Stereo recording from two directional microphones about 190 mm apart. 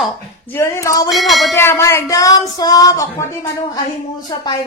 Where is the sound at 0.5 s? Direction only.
15° left (ahead or behind).